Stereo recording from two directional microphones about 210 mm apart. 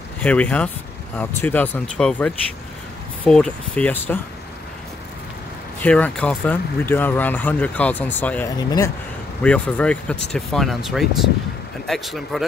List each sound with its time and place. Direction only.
0.2 s speech: 5° left (ahead or behind)
5.8 s speech: 5° left (ahead or behind)
9.4 s speech: 5° left (ahead or behind)